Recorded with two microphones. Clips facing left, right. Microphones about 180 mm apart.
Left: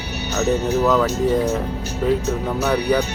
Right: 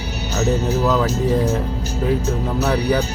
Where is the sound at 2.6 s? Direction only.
5° right (ahead or behind).